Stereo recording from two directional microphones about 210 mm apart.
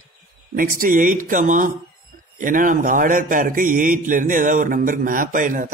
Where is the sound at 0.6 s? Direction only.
40° right (ahead or behind).